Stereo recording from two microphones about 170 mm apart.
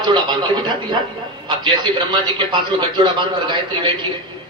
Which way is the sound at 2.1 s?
30° right (ahead or behind).